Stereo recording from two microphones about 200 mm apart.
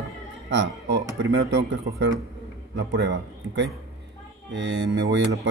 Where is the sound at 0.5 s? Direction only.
60° right (ahead or behind).